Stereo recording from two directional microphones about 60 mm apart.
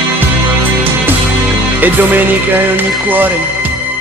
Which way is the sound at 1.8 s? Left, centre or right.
Right.